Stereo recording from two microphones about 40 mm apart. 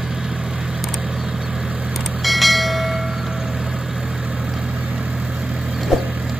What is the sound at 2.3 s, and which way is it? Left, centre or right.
Train, centre.